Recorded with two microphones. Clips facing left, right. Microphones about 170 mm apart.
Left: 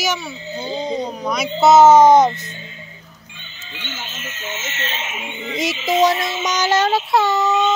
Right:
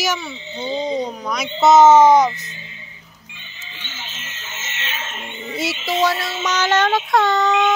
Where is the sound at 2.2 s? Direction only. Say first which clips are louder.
Left 2 dB; 55° left (ahead or behind).